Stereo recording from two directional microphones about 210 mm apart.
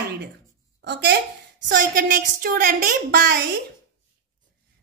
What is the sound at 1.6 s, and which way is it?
A woman's voice, 45° right (ahead or behind).